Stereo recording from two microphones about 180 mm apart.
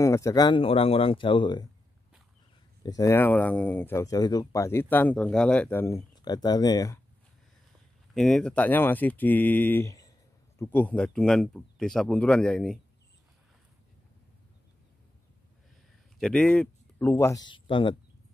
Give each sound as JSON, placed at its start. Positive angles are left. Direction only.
{"t": 0.0, "sound": "speech", "side_deg": 15}
{"t": 2.8, "sound": "speech", "side_deg": 20}
{"t": 6.2, "sound": "speech", "side_deg": 20}
{"t": 8.1, "sound": "speech", "side_deg": 0}
{"t": 16.2, "sound": "speech", "side_deg": 5}